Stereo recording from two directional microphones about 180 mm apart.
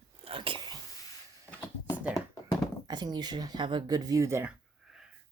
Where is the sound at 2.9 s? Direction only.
25° right (ahead or behind).